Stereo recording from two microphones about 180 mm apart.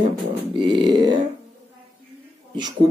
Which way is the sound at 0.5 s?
25° right (ahead or behind).